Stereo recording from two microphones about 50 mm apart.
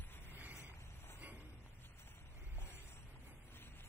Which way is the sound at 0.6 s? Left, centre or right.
Left.